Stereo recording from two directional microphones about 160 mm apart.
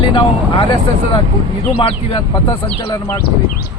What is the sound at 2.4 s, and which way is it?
Speech, 30° left (ahead or behind).